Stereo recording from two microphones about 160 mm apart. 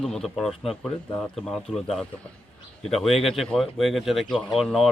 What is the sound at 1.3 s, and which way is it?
Speech, centre (ahead or behind).